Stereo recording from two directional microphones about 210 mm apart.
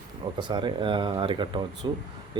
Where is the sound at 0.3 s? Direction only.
20° right (ahead or behind).